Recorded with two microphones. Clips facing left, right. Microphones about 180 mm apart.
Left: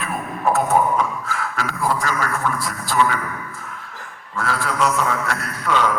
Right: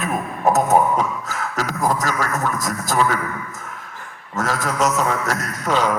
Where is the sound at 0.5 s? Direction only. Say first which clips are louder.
Right 1 dB; 40° right (ahead or behind).